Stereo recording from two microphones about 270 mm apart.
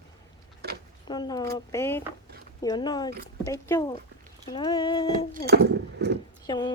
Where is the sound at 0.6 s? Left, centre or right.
Right.